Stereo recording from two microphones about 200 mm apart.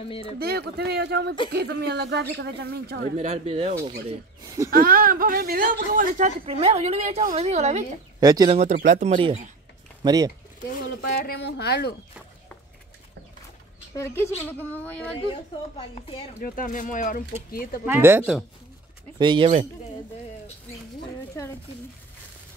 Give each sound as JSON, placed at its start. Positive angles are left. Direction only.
{"t": 0.0, "sound": "speech", "side_deg": 30}
{"t": 0.4, "sound": "speech", "side_deg": -55}
{"t": 3.2, "sound": "a woman's voice", "side_deg": -30}
{"t": 4.6, "sound": "speech", "side_deg": -45}
{"t": 6.4, "sound": "a woman's voice", "side_deg": -30}
{"t": 8.2, "sound": "speech", "side_deg": -20}
{"t": 8.5, "sound": "a woman's voice", "side_deg": -35}
{"t": 10.0, "sound": "speech", "side_deg": -20}
{"t": 11.0, "sound": "speech", "side_deg": 55}
{"t": 13.9, "sound": "a woman's voice", "side_deg": 15}
{"t": 16.3, "sound": "speech", "side_deg": 40}
{"t": 17.8, "sound": "speech", "side_deg": -10}
{"t": 19.1, "sound": "speech", "side_deg": -25}